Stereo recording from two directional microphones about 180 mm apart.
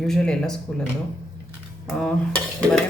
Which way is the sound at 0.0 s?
5° left (ahead or behind).